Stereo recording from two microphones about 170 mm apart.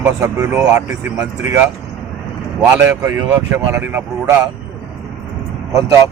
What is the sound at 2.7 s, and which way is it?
Speech, 15° right (ahead or behind).